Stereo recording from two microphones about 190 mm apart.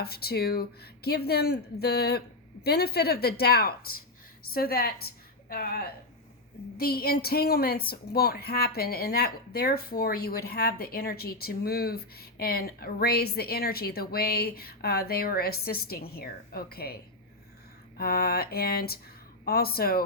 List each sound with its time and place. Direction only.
0.0 s a woman's voice: 55° left (ahead or behind)